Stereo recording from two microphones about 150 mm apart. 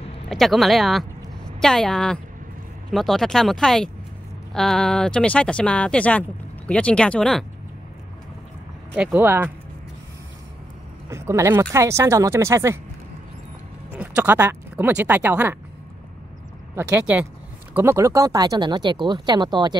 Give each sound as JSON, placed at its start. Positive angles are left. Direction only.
{"t": 0.3, "sound": "speech", "side_deg": 0}
{"t": 8.9, "sound": "speech", "side_deg": -10}
{"t": 11.1, "sound": "speech", "side_deg": -20}
{"t": 13.9, "sound": "speech", "side_deg": -10}
{"t": 16.7, "sound": "speech", "side_deg": -10}